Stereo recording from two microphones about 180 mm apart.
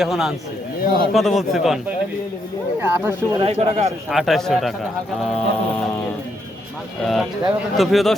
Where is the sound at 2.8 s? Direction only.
10° right (ahead or behind).